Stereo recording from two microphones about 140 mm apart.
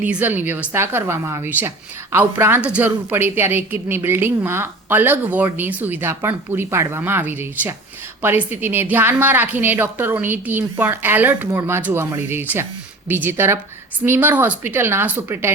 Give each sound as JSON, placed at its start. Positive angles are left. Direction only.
{"t": 0.0, "sound": "a woman's voice", "side_deg": -10}